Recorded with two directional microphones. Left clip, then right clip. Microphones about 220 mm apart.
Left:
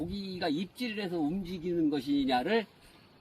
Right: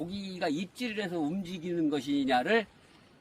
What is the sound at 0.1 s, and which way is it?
Speech, 5° right (ahead or behind).